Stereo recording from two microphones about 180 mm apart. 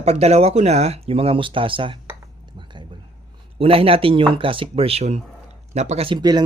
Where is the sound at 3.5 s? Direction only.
30° right (ahead or behind).